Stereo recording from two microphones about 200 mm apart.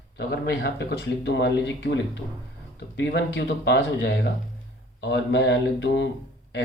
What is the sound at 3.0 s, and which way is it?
Speech, 60° left (ahead or behind).